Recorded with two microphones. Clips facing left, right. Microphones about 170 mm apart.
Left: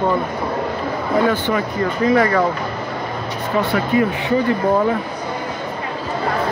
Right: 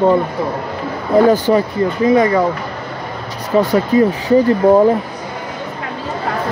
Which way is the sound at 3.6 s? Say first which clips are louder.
Right 5 dB; 40° right (ahead or behind).